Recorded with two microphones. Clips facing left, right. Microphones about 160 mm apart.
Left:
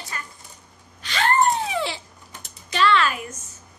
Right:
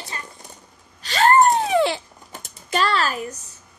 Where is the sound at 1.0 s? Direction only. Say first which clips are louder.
Right 5 dB; 40° right (ahead or behind); by 2.0 s 55° right (ahead or behind).